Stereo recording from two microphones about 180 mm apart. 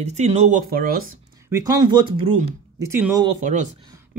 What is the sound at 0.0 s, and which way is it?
Speech, 40° right (ahead or behind).